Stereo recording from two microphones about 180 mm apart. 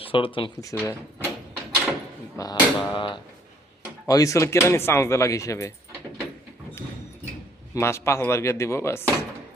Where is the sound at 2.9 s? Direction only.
25° left (ahead or behind).